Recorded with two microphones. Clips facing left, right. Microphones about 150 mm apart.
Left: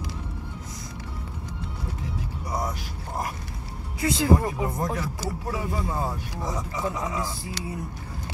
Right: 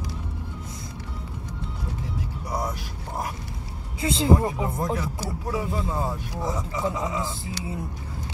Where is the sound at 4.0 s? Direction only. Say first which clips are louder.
Right 1 dB; 25° right (ahead or behind).